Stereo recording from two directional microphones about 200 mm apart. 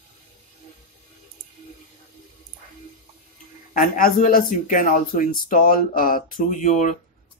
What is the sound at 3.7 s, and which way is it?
Speech, 45° left (ahead or behind).